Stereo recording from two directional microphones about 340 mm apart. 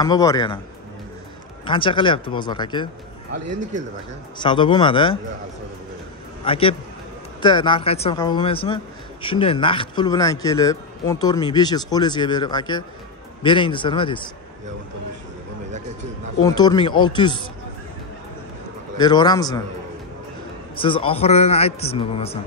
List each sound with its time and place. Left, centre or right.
0.0 s speech: centre
1.7 s speech: centre
4.4 s speech: centre
6.4 s a man's voice: centre
16.4 s speech: centre
18.9 s speech: centre
20.7 s speech: centre